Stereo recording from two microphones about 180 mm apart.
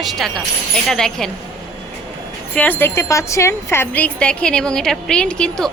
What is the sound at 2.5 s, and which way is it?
A woman's voice, 10° left (ahead or behind).